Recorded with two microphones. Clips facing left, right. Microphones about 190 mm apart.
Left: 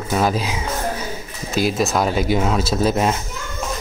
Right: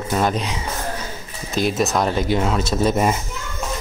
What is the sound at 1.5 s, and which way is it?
Speech, centre (ahead or behind).